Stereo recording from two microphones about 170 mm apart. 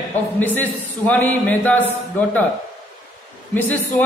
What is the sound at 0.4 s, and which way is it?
A man's voice, 10° left (ahead or behind).